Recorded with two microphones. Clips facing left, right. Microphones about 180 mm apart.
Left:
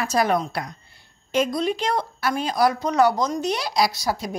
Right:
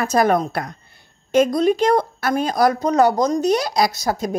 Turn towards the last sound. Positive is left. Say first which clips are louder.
# right 3 dB
turn(degrees=-50)  # may be behind; listen again after turning